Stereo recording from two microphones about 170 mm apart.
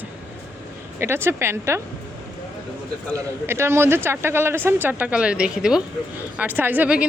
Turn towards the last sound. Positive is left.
turn(degrees=-10)  # may be behind; listen again after turning